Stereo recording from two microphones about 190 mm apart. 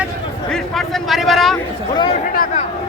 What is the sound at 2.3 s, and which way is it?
Speech, 45° left (ahead or behind).